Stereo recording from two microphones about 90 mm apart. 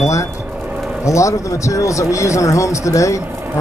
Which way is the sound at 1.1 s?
35° left (ahead or behind).